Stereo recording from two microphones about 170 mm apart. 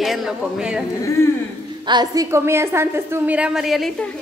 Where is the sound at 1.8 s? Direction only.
25° right (ahead or behind); by 4.0 s centre (ahead or behind).